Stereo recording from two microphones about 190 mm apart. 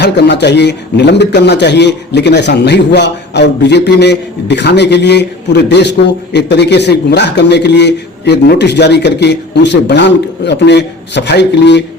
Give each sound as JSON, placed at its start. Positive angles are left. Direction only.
{"t": 0.0, "sound": "speech", "side_deg": 65}